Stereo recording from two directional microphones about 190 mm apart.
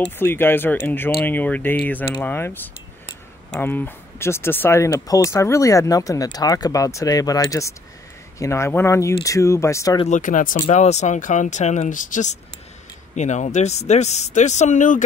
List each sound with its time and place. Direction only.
0.0 s speech: 10° left (ahead or behind)
9.9 s speech: 40° left (ahead or behind)